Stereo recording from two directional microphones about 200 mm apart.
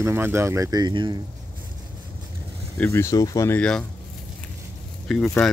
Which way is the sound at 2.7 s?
10° left (ahead or behind).